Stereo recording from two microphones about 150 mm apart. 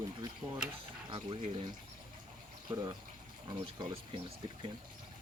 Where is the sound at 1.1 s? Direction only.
35° right (ahead or behind).